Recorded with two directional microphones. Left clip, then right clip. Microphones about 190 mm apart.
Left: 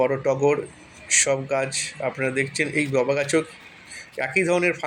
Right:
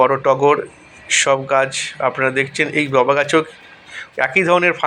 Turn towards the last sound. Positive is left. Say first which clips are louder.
# right 7 dB
turn(degrees=5)  # may be behind; listen again after turning